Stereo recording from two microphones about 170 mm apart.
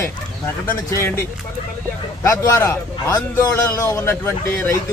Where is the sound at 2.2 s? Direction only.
20° left (ahead or behind).